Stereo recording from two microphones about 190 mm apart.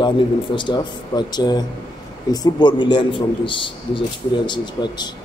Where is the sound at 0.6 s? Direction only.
25° left (ahead or behind).